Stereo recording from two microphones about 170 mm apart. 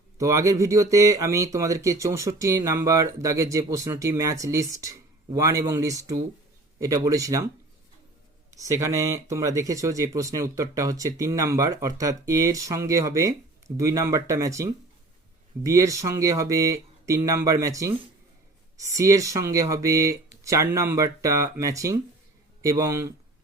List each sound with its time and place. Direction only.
0.2 s speech: 20° right (ahead or behind)
8.4 s speech: 20° right (ahead or behind)